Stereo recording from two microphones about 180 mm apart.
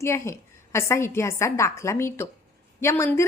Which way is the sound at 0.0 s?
15° left (ahead or behind).